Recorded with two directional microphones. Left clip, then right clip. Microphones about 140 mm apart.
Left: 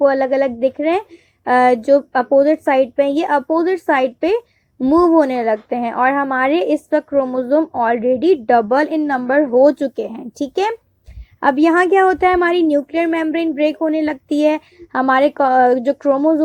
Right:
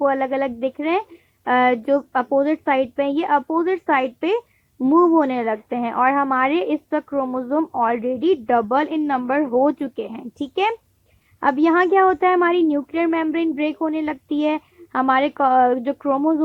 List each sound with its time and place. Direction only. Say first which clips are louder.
0.0 s speech: left 6 dB; 20° left (ahead or behind)